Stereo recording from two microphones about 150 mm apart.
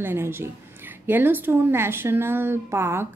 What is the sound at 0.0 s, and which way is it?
Speech, 15° right (ahead or behind).